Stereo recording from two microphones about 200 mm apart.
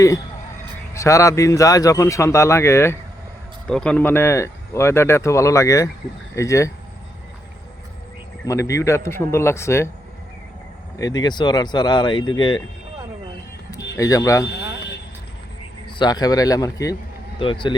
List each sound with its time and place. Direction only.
0.9 s speech: 15° left (ahead or behind)
8.4 s speech: 15° left (ahead or behind)
10.9 s speech: 20° left (ahead or behind)
13.9 s speech: 15° left (ahead or behind)
14.4 s a sound: 55° left (ahead or behind)
16.0 s speech: 20° left (ahead or behind)